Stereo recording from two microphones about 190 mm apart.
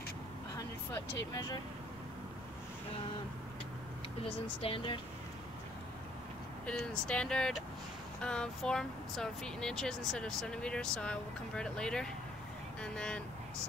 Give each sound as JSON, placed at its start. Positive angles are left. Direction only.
{"t": 1.3, "sound": "speech", "side_deg": 20}
{"t": 4.2, "sound": "speech", "side_deg": 30}
{"t": 6.6, "sound": "speech", "side_deg": 5}